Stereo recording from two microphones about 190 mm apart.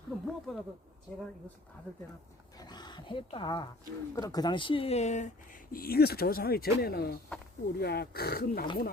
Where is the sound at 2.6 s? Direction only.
20° left (ahead or behind).